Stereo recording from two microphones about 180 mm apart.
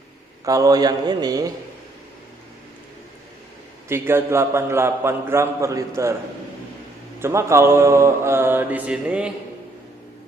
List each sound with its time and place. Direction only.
0.4 s a man's voice: 20° right (ahead or behind)
3.8 s a man's voice: 15° right (ahead or behind)
7.2 s a man's voice: 15° right (ahead or behind)